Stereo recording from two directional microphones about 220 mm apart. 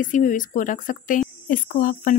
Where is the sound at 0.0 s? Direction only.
35° left (ahead or behind).